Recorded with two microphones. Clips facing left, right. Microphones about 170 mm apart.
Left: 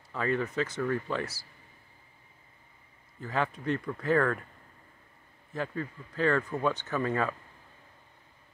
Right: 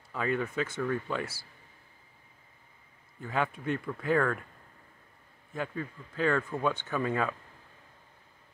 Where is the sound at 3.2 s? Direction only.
5° right (ahead or behind).